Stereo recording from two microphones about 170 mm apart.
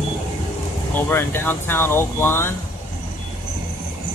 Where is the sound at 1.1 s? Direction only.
10° left (ahead or behind).